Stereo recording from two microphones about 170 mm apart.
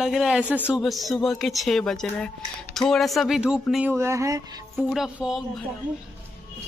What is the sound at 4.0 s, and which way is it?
Speech, 15° right (ahead or behind).